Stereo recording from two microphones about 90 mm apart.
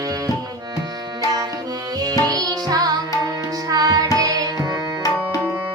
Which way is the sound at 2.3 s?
45° right (ahead or behind).